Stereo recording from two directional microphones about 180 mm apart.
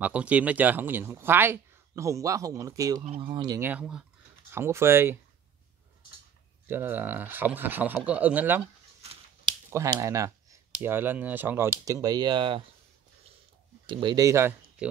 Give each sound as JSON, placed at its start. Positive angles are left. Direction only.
{"t": 0.0, "sound": "speech", "side_deg": -5}
{"t": 6.7, "sound": "speech", "side_deg": -10}
{"t": 9.7, "sound": "speech", "side_deg": -15}
{"t": 13.8, "sound": "speech", "side_deg": -25}
{"t": 14.8, "sound": "music", "side_deg": -5}